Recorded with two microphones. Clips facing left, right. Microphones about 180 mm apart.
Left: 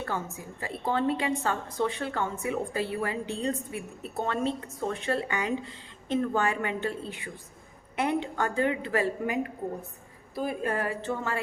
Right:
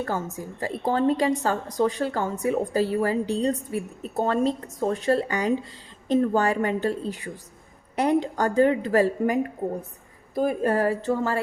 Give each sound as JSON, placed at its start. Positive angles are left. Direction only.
{"t": 0.0, "sound": "a woman's voice", "side_deg": -45}